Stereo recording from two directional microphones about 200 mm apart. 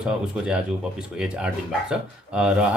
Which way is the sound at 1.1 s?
5° right (ahead or behind).